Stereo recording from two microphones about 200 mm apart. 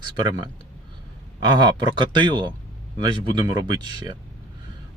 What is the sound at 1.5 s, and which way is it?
Speech, 20° right (ahead or behind).